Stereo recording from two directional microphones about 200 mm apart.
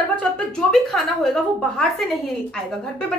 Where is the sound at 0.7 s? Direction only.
Centre (ahead or behind).